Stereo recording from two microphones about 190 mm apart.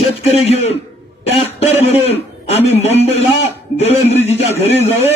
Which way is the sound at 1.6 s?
35° left (ahead or behind).